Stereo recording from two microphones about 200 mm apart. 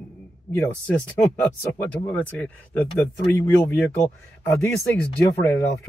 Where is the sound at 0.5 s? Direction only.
10° left (ahead or behind).